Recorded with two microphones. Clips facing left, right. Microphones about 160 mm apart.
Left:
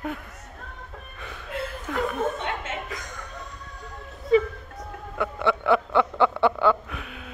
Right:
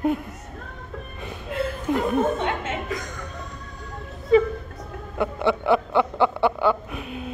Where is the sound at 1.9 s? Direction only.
20° right (ahead or behind).